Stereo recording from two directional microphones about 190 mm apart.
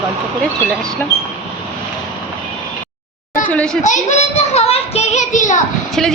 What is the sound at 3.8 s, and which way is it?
A child's voice, 40° left (ahead or behind).